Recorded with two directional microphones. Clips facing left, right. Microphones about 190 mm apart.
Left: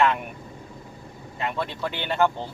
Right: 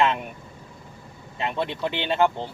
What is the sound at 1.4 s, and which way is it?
Speech, 20° right (ahead or behind).